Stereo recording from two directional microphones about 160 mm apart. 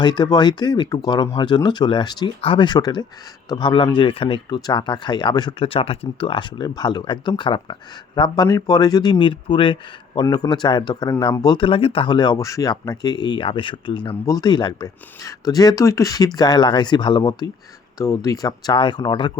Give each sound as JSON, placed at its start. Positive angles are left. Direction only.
{"t": 0.0, "sound": "speech", "side_deg": 30}